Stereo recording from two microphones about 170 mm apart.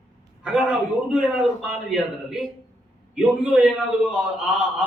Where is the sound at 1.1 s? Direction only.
5° right (ahead or behind).